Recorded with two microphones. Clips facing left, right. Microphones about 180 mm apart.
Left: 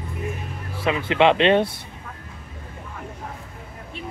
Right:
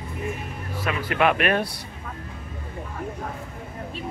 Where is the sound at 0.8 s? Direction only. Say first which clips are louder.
Left 4 dB; 25° left (ahead or behind).